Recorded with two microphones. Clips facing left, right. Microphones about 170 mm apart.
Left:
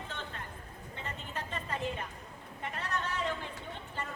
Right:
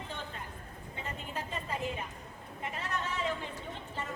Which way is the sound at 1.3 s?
5° right (ahead or behind).